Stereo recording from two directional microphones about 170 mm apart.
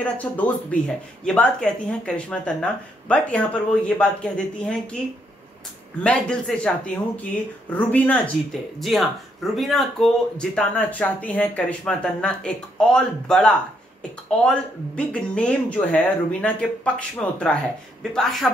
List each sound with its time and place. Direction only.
0.0 s speech: 10° left (ahead or behind)
6.0 s speech: 5° left (ahead or behind)
7.7 s speech: 10° left (ahead or behind)